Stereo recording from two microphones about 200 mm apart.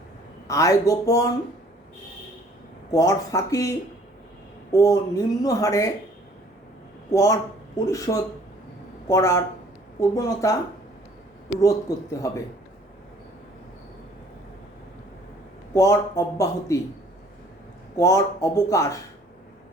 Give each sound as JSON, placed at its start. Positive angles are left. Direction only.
{"t": 0.4, "sound": "speech", "side_deg": 15}
{"t": 2.9, "sound": "speech", "side_deg": 15}
{"t": 7.1, "sound": "speech", "side_deg": 15}
{"t": 12.1, "sound": "speech", "side_deg": 15}
{"t": 15.7, "sound": "speech", "side_deg": 15}
{"t": 17.9, "sound": "speech", "side_deg": 15}